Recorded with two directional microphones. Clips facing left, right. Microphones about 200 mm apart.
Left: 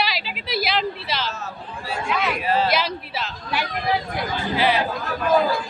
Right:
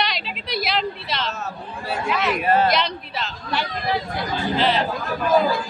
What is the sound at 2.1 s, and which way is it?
Speech, centre (ahead or behind).